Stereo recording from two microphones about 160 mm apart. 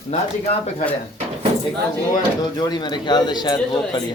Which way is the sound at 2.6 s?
25° left (ahead or behind).